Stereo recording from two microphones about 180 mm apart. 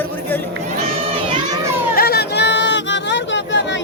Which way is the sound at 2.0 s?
60° left (ahead or behind).